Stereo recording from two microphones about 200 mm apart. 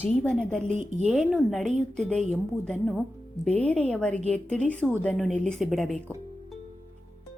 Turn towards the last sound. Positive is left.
turn(degrees=0)  # may be behind; listen again after turning